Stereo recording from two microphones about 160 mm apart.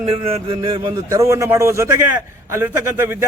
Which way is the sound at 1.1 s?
20° right (ahead or behind).